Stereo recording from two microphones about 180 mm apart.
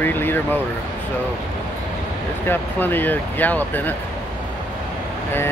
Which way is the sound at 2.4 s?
10° left (ahead or behind).